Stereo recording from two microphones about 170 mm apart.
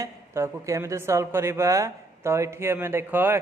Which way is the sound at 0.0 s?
15° right (ahead or behind).